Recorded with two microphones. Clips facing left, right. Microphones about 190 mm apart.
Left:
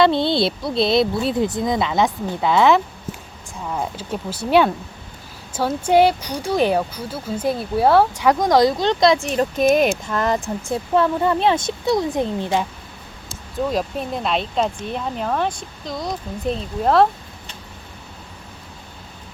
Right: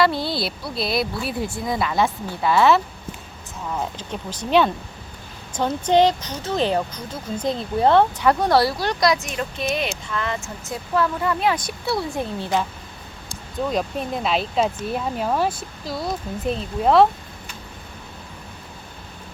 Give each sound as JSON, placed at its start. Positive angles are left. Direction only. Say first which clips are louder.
{"t": 0.0, "sound": "speech", "louder": "left 5 dB", "side_deg": 25}
{"t": 13.7, "sound": "speech", "louder": "even", "side_deg": 0}